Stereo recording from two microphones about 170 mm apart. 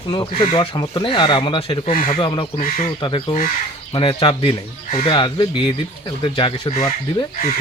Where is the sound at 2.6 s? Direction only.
50° left (ahead or behind).